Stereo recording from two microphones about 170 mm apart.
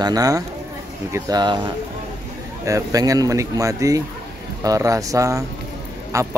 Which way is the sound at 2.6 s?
20° right (ahead or behind).